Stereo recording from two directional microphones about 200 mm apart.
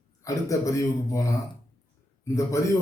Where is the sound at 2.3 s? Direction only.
15° left (ahead or behind).